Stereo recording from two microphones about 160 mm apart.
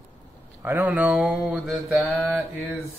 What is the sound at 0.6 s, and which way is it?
Mantra, 10° right (ahead or behind).